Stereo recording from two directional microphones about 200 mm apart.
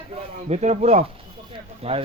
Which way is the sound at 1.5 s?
30° right (ahead or behind).